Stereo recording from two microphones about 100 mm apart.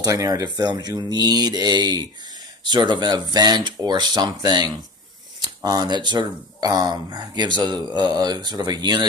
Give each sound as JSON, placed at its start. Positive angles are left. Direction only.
{"t": 0.0, "sound": "speech", "side_deg": -35}